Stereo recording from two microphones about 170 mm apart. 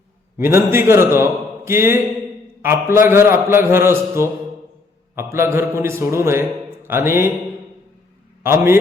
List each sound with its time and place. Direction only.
0.3 s a man's voice: 15° right (ahead or behind)
8.4 s a man's voice: 15° right (ahead or behind)